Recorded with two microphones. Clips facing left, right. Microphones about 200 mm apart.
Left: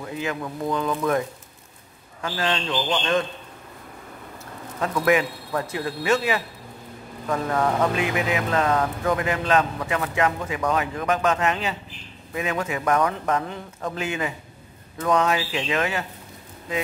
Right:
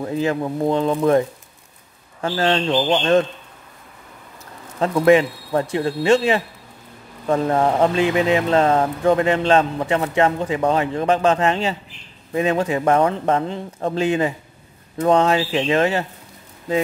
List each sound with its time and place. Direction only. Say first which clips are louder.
0.0 s speech: right 8 dB; 35° right (ahead or behind)
2.2 s speech: right 7 dB; 40° right (ahead or behind)
4.7 s speech: right 7 dB; 30° right (ahead or behind)